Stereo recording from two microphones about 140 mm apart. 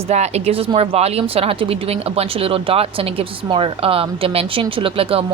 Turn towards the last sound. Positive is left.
turn(degrees=-45)  # may be behind; listen again after turning